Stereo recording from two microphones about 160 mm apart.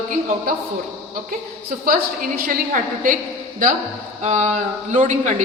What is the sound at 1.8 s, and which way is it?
A woman's voice, 65° right (ahead or behind).